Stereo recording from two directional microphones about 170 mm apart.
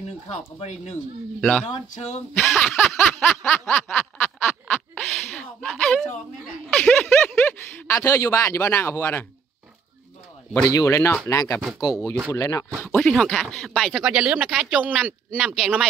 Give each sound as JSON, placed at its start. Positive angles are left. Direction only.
{"t": 0.3, "sound": "speech", "side_deg": 40}
{"t": 1.4, "sound": "speech", "side_deg": 0}
{"t": 2.5, "sound": "a sound", "side_deg": 10}
{"t": 7.8, "sound": "speech", "side_deg": 15}
{"t": 10.7, "sound": "speech", "side_deg": 20}
{"t": 12.8, "sound": "speech", "side_deg": 5}